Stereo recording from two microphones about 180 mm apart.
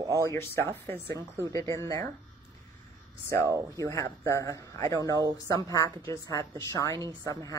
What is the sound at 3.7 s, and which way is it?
Speech, 15° left (ahead or behind).